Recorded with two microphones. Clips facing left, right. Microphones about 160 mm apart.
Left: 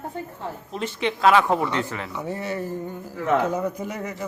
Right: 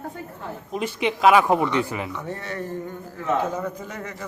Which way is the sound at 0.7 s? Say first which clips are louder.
Right 2 dB; 10° right (ahead or behind).